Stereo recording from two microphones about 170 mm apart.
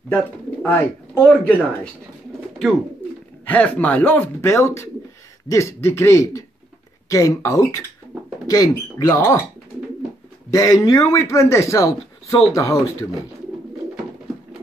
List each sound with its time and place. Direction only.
0.1 s speech: 10° left (ahead or behind)
3.4 s speech: 10° left (ahead or behind)
10.5 s speech: 20° left (ahead or behind)